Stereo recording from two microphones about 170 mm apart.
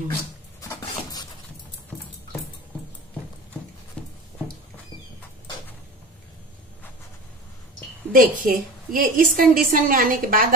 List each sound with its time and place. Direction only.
0.6 s cupboard open or close: 20° left (ahead or behind)
4.0 s writing: 5° left (ahead or behind)
8.1 s a woman's voice: 55° right (ahead or behind)